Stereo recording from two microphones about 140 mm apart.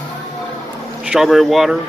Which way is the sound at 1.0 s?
Centre (ahead or behind).